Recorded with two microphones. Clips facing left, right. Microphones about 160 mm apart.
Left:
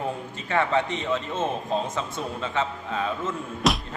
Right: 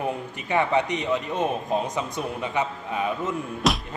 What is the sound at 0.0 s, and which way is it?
A man's voice, 15° right (ahead or behind).